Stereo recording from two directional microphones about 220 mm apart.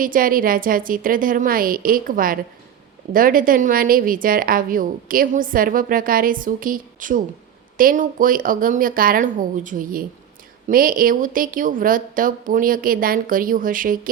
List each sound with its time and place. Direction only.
0.0 s a woman's voice: 40° right (ahead or behind)